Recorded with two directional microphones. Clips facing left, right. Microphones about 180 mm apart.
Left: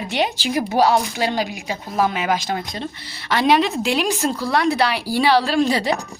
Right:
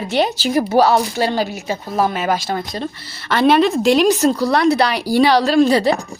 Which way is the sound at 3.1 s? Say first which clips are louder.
Right 3 dB; 10° left (ahead or behind).